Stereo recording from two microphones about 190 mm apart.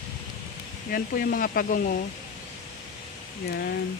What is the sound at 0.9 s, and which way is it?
Speech, 50° left (ahead or behind).